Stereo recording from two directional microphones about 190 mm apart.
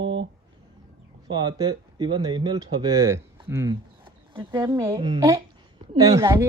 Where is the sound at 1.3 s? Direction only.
25° right (ahead or behind).